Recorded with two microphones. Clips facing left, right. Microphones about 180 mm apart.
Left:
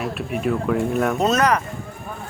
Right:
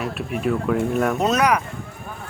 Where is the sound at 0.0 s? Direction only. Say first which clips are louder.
Even; centre (ahead or behind).